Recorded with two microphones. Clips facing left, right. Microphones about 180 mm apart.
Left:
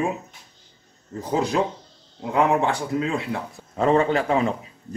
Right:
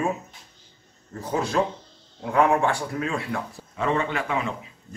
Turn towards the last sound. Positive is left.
turn(degrees=35)  # may be behind; listen again after turning